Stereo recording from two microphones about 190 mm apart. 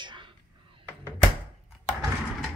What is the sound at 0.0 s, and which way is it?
Whispering, 25° right (ahead or behind).